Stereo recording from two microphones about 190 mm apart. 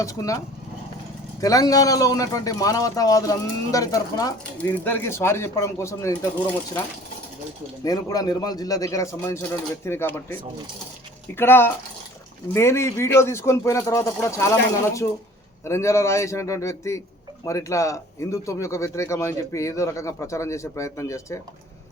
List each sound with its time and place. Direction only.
0.0 s speech: 15° left (ahead or behind)
7.9 s speech: 20° left (ahead or behind)